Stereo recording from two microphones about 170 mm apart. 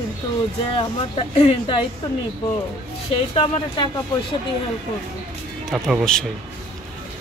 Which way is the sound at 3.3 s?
25° left (ahead or behind).